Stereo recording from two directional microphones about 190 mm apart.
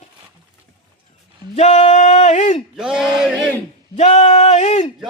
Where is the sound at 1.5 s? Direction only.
35° left (ahead or behind).